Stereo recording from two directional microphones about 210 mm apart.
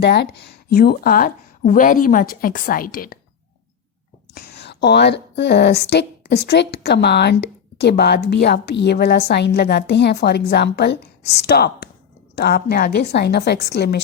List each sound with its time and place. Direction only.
0.0 s speech: 55° left (ahead or behind)
4.4 s speech: 50° left (ahead or behind)